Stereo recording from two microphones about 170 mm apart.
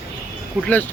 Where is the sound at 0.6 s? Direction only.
5° left (ahead or behind).